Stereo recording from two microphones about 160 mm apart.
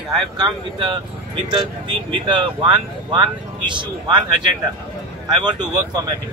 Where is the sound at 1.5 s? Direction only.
30° right (ahead or behind).